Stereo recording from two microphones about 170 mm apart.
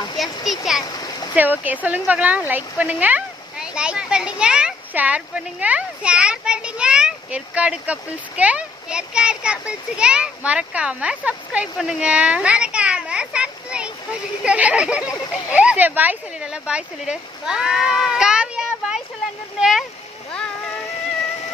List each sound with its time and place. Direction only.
0.2 s speech: centre (ahead or behind)
0.8 s stream: 25° left (ahead or behind)
1.3 s speech: 10° right (ahead or behind)
15.0 s speech: 20° left (ahead or behind)
15.5 s speech: 10° right (ahead or behind)